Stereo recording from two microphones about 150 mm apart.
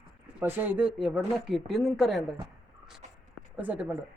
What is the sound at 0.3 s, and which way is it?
Speech, 15° right (ahead or behind).